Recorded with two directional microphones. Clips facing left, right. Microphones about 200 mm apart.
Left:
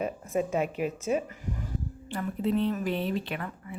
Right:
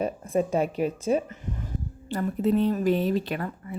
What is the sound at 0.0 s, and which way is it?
Speech, 35° right (ahead or behind).